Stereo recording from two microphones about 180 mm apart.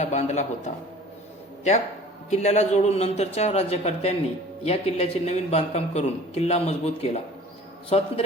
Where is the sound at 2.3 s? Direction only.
40° left (ahead or behind).